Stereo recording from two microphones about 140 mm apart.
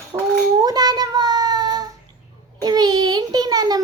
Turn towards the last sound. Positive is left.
turn(degrees=-30)  # may be behind; listen again after turning